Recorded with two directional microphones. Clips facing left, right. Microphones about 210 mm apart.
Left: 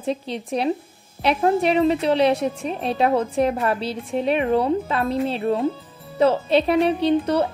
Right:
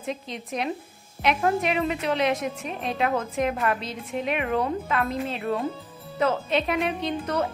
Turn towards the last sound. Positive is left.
turn(degrees=30)  # may be behind; listen again after turning